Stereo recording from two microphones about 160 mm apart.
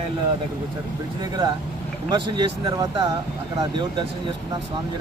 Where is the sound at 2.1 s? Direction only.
30° right (ahead or behind).